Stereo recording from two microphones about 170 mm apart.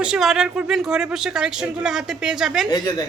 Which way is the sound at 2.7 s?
25° left (ahead or behind).